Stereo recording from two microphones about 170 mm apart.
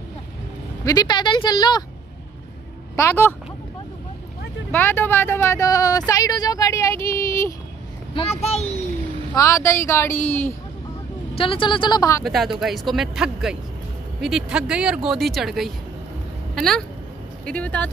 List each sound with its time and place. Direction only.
0.8 s speech: 25° left (ahead or behind)
3.0 s speech: 15° left (ahead or behind)
4.6 s speech: 10° left (ahead or behind)
8.1 s a child's voice: 35° left (ahead or behind)
9.3 s speech: 20° left (ahead or behind)
11.3 s speech: 30° left (ahead or behind)
12.2 s speech: centre (ahead or behind)